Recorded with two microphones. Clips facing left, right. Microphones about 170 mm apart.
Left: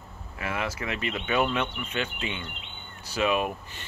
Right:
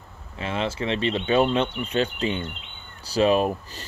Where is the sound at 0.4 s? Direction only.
25° right (ahead or behind).